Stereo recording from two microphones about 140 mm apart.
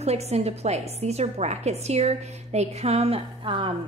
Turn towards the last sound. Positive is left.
turn(degrees=-35)  # may be behind; listen again after turning